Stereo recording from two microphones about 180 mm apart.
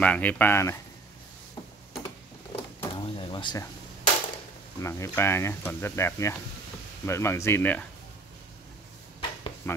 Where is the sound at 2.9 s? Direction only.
30° left (ahead or behind).